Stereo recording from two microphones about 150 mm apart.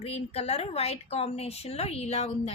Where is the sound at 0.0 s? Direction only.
40° left (ahead or behind).